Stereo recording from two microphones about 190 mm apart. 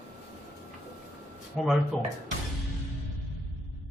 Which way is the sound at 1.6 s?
Centre (ahead or behind).